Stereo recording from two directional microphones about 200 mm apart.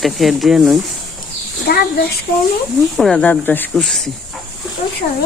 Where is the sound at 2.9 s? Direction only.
Centre (ahead or behind).